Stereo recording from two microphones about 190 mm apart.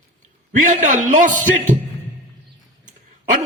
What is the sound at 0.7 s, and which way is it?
Speech, 40° right (ahead or behind).